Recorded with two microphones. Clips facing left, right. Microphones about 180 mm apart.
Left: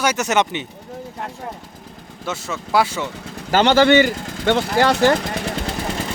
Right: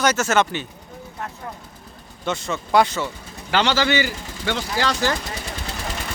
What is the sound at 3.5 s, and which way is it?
Speech, 50° left (ahead or behind).